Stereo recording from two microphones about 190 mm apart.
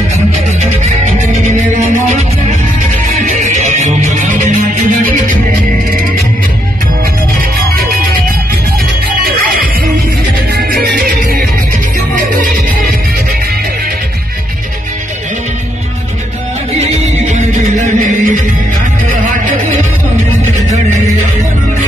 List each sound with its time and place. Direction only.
3.0 s music: 45° right (ahead or behind)
9.2 s music: 50° right (ahead or behind)
11.0 s music: 50° right (ahead or behind)
16.7 s music: 35° right (ahead or behind)